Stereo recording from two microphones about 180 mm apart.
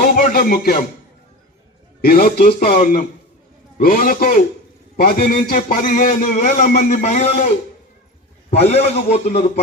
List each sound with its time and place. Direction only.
0.2 s speech: 55° left (ahead or behind)
2.0 s a man's voice: 55° left (ahead or behind); by 7.3 s 40° left (ahead or behind)
8.4 s a man's voice: 35° left (ahead or behind)